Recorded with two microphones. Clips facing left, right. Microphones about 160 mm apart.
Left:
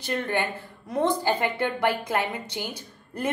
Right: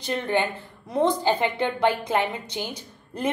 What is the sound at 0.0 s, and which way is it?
A woman's voice, 20° right (ahead or behind).